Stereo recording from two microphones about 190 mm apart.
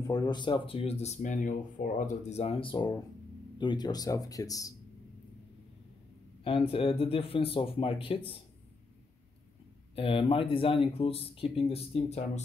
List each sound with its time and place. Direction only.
0.0 s speech: 20° left (ahead or behind)
6.4 s speech: 30° left (ahead or behind)
9.9 s speech: 30° left (ahead or behind)